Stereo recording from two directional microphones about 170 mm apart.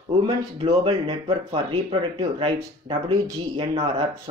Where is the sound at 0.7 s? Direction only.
35° right (ahead or behind).